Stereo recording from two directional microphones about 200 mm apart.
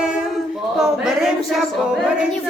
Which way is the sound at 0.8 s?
5° right (ahead or behind).